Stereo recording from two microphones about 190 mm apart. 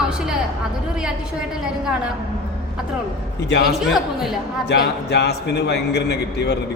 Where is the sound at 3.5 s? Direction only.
65° left (ahead or behind).